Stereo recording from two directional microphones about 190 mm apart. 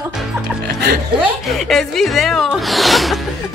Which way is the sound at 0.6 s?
60° right (ahead or behind).